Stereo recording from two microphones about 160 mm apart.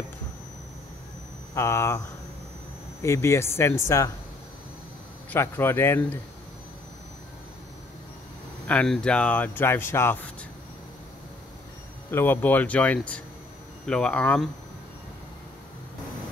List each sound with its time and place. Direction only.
1.5 s speech: 15° left (ahead or behind)
3.0 s speech: 15° left (ahead or behind)
5.3 s speech: 15° left (ahead or behind)
8.6 s speech: 5° left (ahead or behind)
12.1 s speech: 15° left (ahead or behind)